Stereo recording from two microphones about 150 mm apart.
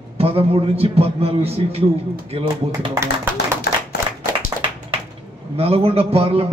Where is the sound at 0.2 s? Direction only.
40° right (ahead or behind).